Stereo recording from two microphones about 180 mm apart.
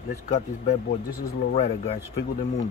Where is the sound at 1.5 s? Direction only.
35° left (ahead or behind).